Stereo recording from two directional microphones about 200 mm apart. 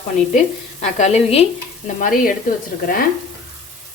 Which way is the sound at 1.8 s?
45° left (ahead or behind).